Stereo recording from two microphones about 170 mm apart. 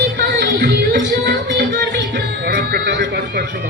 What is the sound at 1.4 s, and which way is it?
Music, 90° right.